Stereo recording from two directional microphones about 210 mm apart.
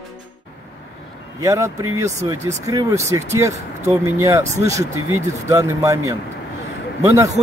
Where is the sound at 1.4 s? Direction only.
15° right (ahead or behind).